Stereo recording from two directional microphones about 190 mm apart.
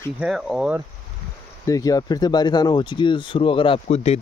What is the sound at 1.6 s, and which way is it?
Speech, 20° left (ahead or behind).